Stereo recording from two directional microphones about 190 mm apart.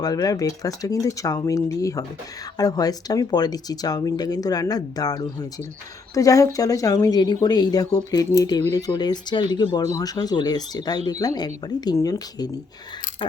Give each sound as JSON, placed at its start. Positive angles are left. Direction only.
{"t": 0.0, "sound": "speech", "side_deg": 20}